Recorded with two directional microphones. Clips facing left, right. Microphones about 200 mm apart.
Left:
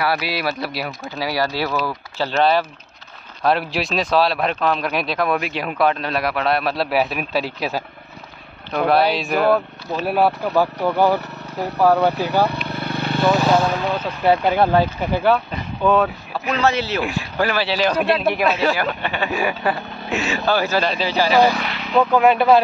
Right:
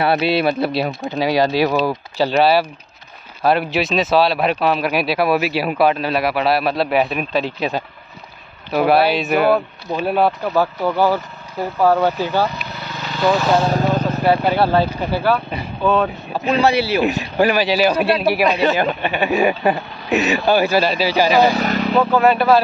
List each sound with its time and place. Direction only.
0.0 s speech: 25° right (ahead or behind); by 10.0 s 5° right (ahead or behind)
10.0 s speech: 10° left (ahead or behind)
12.6 s vehicle: 55° left (ahead or behind)
13.7 s vehicle: 40° right (ahead or behind)
14.5 s speech: 15° left (ahead or behind)
16.5 s speech: 15° right (ahead or behind)
18.7 s speech: 20° right (ahead or behind)
21.3 s speech: 20° right (ahead or behind)
21.5 s vehicle: 40° right (ahead or behind)
22.1 s speech: 15° left (ahead or behind)